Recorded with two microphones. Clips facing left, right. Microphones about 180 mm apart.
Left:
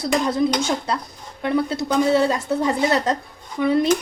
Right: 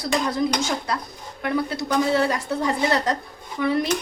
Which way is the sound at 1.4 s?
25° left (ahead or behind).